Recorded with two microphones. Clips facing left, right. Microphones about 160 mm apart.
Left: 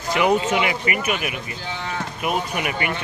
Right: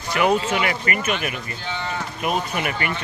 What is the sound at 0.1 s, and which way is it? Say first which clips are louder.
Speech: left 1 dB; 20° left (ahead or behind).